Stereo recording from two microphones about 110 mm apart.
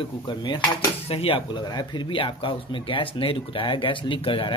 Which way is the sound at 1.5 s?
40° left (ahead or behind).